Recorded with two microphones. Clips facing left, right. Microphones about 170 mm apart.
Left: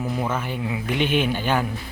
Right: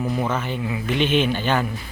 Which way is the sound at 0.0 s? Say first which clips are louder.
Right 2 dB; 10° left (ahead or behind).